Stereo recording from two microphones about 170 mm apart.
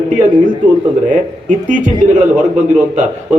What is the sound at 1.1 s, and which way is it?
Speech, 50° right (ahead or behind).